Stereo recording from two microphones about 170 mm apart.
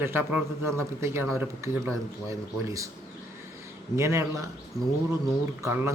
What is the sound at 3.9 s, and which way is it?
Speech, 15° right (ahead or behind).